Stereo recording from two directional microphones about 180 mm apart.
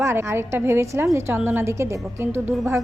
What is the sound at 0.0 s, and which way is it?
A woman's voice, 15° right (ahead or behind).